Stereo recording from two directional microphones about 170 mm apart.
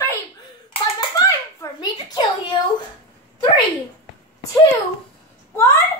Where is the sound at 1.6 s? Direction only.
25° left (ahead or behind).